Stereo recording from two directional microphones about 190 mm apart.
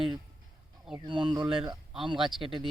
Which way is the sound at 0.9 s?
25° right (ahead or behind).